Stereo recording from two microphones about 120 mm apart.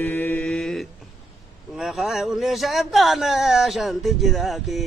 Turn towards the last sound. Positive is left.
turn(degrees=0)  # may be behind; listen again after turning